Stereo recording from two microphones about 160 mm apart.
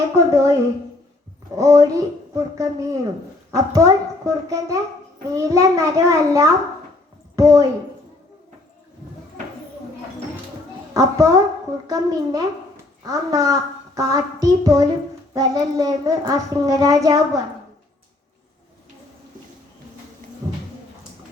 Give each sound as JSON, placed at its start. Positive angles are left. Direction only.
{"t": 0.3, "sound": "a sound", "side_deg": -20}
{"t": 1.5, "sound": "a child's voice", "side_deg": -20}
{"t": 10.9, "sound": "a child's voice", "side_deg": -20}